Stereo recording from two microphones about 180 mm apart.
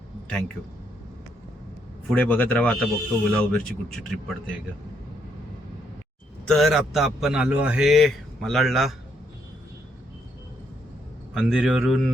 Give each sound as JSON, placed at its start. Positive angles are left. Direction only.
{"t": 0.3, "sound": "a man's voice", "side_deg": 5}
{"t": 2.0, "sound": "a man's voice", "side_deg": 5}
{"t": 6.4, "sound": "a man's voice", "side_deg": 0}
{"t": 11.3, "sound": "a man's voice", "side_deg": 0}